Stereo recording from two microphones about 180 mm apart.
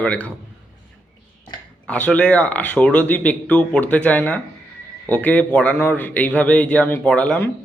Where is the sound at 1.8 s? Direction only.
5° left (ahead or behind).